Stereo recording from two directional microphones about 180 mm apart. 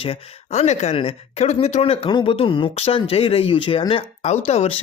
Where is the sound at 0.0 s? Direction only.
35° left (ahead or behind).